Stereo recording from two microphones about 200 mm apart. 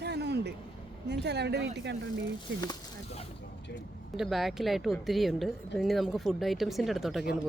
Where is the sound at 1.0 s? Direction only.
55° right (ahead or behind).